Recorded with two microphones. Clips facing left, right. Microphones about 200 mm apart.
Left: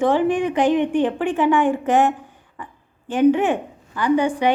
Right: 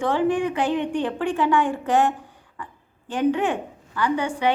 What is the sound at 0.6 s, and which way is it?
A woman's voice, 15° left (ahead or behind).